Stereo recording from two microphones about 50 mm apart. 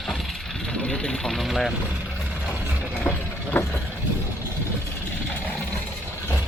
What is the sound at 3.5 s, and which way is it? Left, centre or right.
Vehicle, left.